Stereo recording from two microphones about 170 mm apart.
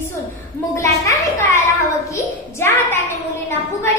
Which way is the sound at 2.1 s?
15° left (ahead or behind).